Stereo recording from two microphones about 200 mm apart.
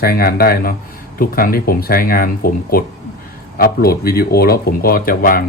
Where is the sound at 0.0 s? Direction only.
50° left (ahead or behind).